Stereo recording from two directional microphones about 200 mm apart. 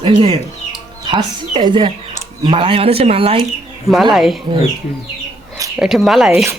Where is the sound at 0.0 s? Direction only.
25° right (ahead or behind).